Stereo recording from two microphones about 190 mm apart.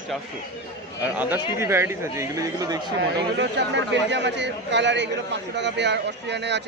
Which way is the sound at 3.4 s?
65° right (ahead or behind).